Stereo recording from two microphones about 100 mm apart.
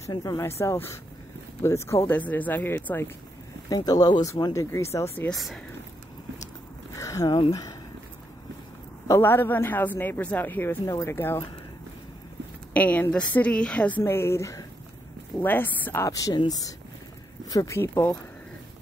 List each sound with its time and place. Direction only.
0.1 s a woman's voice: 35° left (ahead or behind)
2.0 s speech: 15° left (ahead or behind)
3.6 s a woman's voice: 40° left (ahead or behind)
5.3 s speech: centre (ahead or behind)
7.0 s a sound: 35° left (ahead or behind)
9.2 s a woman's voice: 20° left (ahead or behind)
12.7 s a woman's voice: 15° left (ahead or behind); by 14.7 s 30° left (ahead or behind)
15.4 s a woman's voice: 20° left (ahead or behind)